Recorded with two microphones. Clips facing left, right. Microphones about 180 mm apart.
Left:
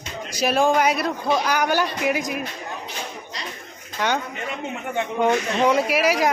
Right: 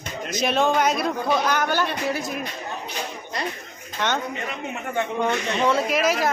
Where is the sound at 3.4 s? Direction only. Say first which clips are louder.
Right 8 dB; 55° right (ahead or behind).